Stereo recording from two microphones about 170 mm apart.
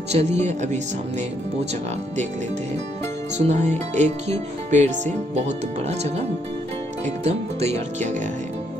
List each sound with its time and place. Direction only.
0.1 s speech: 40° right (ahead or behind)
3.3 s music: 40° right (ahead or behind)
7.2 s speech: 40° right (ahead or behind)